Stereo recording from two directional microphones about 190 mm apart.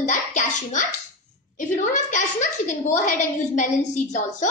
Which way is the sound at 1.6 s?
40° left (ahead or behind).